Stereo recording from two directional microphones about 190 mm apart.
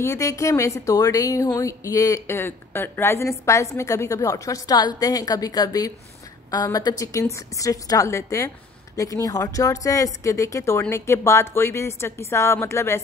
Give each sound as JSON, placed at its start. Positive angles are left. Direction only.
{"t": 0.0, "sound": "a woman's voice", "side_deg": 15}